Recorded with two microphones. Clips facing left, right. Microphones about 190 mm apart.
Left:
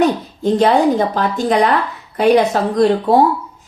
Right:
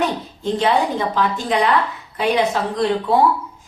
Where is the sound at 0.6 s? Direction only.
45° left (ahead or behind).